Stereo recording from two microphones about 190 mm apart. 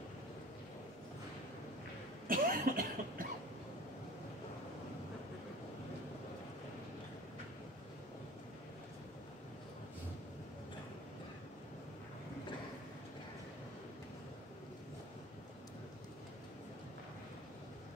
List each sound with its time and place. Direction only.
2.2 s cough: 45° right (ahead or behind)